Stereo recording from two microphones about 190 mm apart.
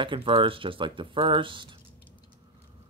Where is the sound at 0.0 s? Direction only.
25° right (ahead or behind).